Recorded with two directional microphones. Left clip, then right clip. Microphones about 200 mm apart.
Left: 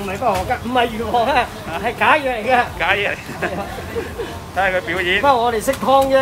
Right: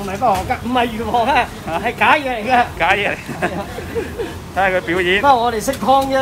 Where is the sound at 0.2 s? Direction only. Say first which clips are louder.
Right 3 dB; 30° right (ahead or behind).